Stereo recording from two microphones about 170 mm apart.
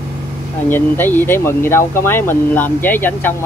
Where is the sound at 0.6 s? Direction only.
10° left (ahead or behind).